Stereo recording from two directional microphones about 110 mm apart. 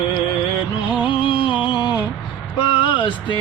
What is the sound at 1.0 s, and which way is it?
Music, 50° left (ahead or behind).